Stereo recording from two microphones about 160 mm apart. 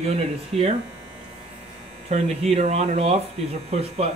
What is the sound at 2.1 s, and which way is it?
Speech, 40° right (ahead or behind).